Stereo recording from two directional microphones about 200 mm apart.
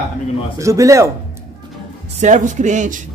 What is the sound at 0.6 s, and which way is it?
Speech, 15° right (ahead or behind).